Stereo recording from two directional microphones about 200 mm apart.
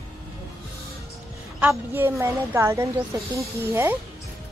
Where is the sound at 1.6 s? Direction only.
10° right (ahead or behind).